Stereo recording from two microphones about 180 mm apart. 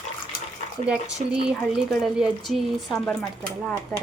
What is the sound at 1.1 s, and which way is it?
Speech, centre (ahead or behind).